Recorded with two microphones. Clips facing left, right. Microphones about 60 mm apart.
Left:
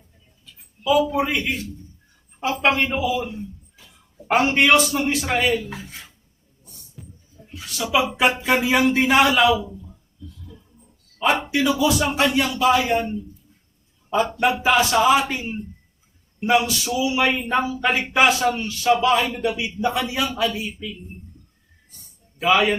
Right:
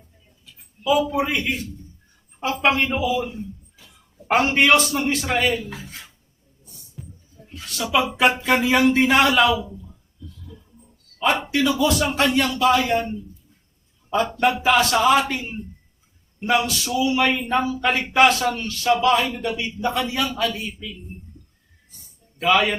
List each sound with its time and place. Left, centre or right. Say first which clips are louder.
0.9 s speech: left 1 dB; centre
7.0 s music: right 3 dB; centre
7.5 s a woman's voice: even; centre
10.4 s a sound: right 1 dB; centre
11.4 s a man's voice: even; centre
14.1 s a man's voice: left 1 dB; left
14.3 s a man's voice: right 1 dB; centre
22.4 s speech: left 1 dB; centre